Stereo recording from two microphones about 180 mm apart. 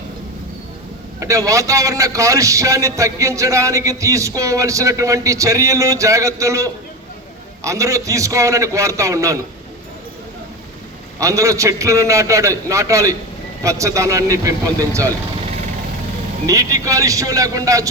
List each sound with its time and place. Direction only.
1.2 s a man's voice: 15° right (ahead or behind)
11.2 s a man's voice: 15° right (ahead or behind)
16.5 s speech: 20° right (ahead or behind)